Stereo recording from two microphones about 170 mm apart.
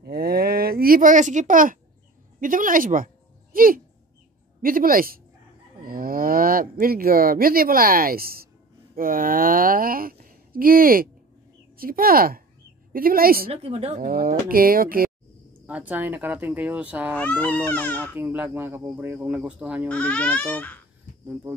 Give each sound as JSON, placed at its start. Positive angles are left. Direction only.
{"t": 0.0, "sound": "a child's voice", "side_deg": -65}
{"t": 13.5, "sound": "speech", "side_deg": -35}
{"t": 13.9, "sound": "speech", "side_deg": -60}
{"t": 15.6, "sound": "speech", "side_deg": -10}
{"t": 17.2, "sound": "speech", "side_deg": 10}
{"t": 18.1, "sound": "speech", "side_deg": -10}
{"t": 19.9, "sound": "speech", "side_deg": 5}